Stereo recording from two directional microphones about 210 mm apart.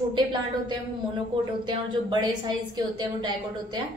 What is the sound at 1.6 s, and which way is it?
A woman's voice, 20° right (ahead or behind).